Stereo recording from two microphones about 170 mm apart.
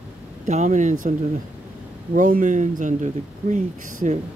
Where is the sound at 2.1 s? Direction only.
50° right (ahead or behind).